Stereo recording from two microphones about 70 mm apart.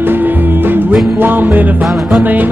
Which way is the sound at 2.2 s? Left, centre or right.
Right.